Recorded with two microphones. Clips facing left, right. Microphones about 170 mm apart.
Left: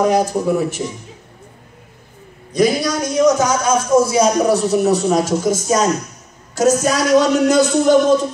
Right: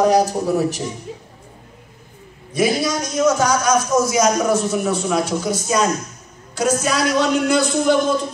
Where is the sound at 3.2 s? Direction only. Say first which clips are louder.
Left 2 dB; 20° left (ahead or behind); by 8.2 s 40° left (ahead or behind).